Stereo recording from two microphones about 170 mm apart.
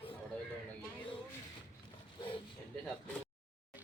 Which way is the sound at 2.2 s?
30° left (ahead or behind).